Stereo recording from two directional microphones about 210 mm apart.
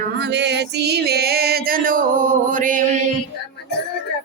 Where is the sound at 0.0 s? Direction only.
55° right (ahead or behind); by 3.0 s 40° right (ahead or behind).